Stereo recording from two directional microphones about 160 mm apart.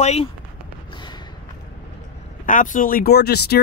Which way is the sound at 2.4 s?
55° left (ahead or behind).